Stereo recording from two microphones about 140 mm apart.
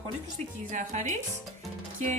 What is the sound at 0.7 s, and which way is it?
Speech, 60° right (ahead or behind).